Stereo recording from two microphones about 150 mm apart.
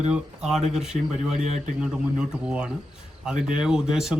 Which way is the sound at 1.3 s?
50° right (ahead or behind).